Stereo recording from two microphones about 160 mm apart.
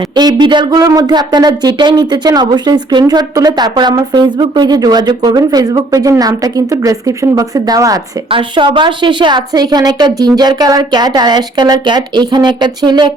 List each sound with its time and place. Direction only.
0.2 s speech: 25° right (ahead or behind)
8.3 s speech: 30° right (ahead or behind)